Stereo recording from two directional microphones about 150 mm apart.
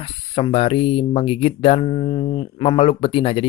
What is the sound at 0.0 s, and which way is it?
Speech, 40° left (ahead or behind).